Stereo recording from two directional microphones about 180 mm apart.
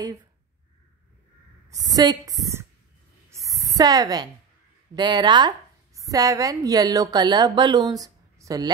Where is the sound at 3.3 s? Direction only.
20° right (ahead or behind).